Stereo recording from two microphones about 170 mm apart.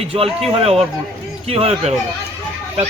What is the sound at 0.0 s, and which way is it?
Speech, 35° right (ahead or behind).